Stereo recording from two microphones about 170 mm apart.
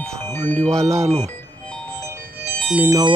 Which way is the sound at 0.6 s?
40° right (ahead or behind).